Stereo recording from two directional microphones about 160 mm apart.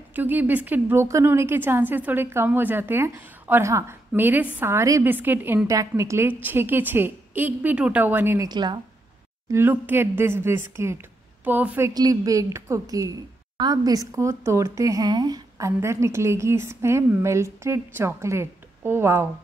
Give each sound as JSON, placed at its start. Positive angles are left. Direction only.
{"t": 0.1, "sound": "speech", "side_deg": -10}
{"t": 8.5, "sound": "a woman's voice", "side_deg": -25}
{"t": 9.5, "sound": "speech", "side_deg": -15}
{"t": 11.9, "sound": "a woman's voice", "side_deg": -25}